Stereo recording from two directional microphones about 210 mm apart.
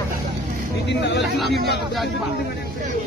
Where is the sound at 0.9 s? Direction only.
55° left (ahead or behind).